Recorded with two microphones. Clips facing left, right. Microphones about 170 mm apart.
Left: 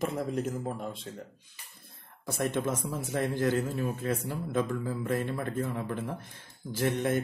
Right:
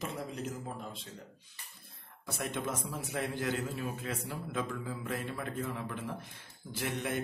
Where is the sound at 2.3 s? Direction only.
45° left (ahead or behind).